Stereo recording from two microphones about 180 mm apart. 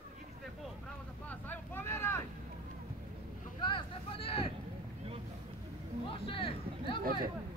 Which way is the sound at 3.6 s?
30° left (ahead or behind).